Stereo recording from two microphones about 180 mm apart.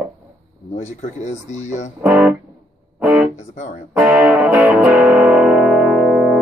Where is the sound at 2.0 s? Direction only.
5° right (ahead or behind).